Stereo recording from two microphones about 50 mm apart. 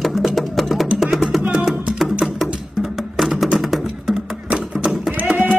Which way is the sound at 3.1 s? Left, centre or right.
Centre.